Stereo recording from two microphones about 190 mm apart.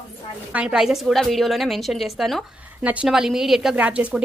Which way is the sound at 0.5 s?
5° right (ahead or behind).